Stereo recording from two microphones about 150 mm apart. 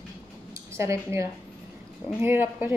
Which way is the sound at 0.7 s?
20° right (ahead or behind).